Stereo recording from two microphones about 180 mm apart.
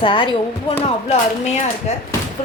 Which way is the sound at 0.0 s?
30° left (ahead or behind).